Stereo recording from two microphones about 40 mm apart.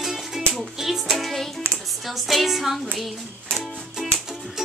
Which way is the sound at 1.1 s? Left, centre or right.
Centre.